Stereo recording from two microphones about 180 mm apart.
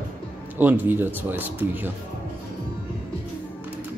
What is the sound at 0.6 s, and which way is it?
Speech, 10° right (ahead or behind).